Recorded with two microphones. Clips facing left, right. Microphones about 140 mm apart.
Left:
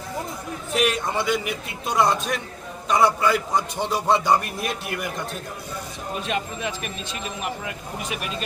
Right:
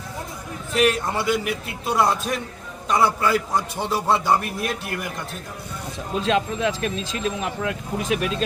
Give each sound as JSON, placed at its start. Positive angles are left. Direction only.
{"t": 0.7, "sound": "a man's voice", "side_deg": 0}
{"t": 6.1, "sound": "speech", "side_deg": -90}